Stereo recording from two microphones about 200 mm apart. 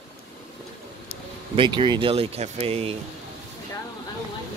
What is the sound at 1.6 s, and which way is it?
Speech, 25° right (ahead or behind).